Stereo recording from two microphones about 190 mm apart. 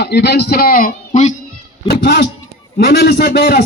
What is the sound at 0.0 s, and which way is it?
A man's voice, 60° left (ahead or behind).